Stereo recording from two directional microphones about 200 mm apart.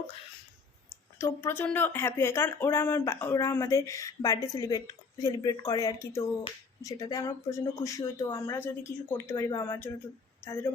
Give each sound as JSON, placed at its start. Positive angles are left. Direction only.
{"t": 1.2, "sound": "speech", "side_deg": 10}